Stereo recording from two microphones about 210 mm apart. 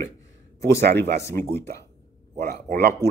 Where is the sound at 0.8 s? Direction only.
50° right (ahead or behind).